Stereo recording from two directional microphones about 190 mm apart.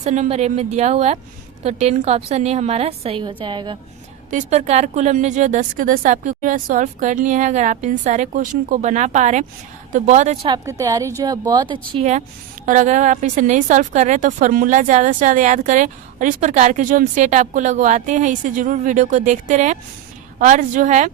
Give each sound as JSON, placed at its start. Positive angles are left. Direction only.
{"t": 0.0, "sound": "speech", "side_deg": -35}
{"t": 4.3, "sound": "speech", "side_deg": -40}
{"t": 10.5, "sound": "a woman's voice", "side_deg": -15}
{"t": 11.9, "sound": "speech", "side_deg": -35}